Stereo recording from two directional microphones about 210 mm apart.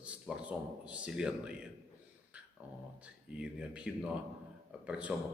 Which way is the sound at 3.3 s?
5° right (ahead or behind).